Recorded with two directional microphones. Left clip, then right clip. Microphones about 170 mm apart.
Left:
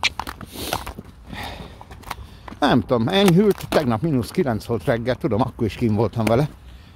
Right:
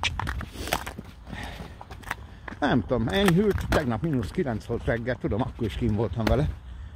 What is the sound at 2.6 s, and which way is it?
Speech, 30° left (ahead or behind).